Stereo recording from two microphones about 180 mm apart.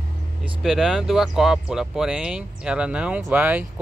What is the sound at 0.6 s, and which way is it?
Speech, centre (ahead or behind).